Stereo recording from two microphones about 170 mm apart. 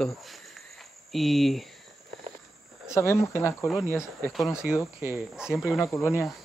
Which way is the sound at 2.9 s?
15° left (ahead or behind).